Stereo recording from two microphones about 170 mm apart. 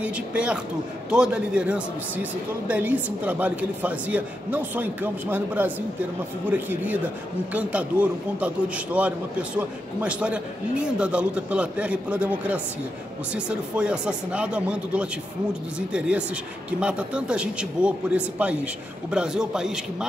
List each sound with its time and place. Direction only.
0.0 s a man's voice: 5° right (ahead or behind)